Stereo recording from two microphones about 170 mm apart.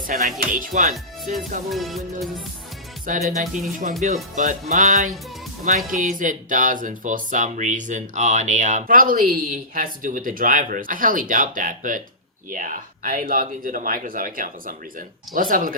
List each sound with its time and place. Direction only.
0.1 s speech: 50° right (ahead or behind)
1.7 s music: centre (ahead or behind)
3.1 s speech: 45° right (ahead or behind)